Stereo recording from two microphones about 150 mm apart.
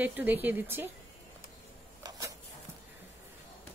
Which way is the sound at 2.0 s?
25° right (ahead or behind).